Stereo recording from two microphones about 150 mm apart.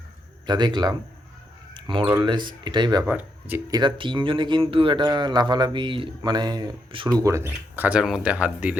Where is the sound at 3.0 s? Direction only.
10° right (ahead or behind).